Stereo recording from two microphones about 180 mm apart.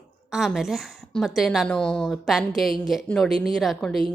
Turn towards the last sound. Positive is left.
turn(degrees=0)  # may be behind; listen again after turning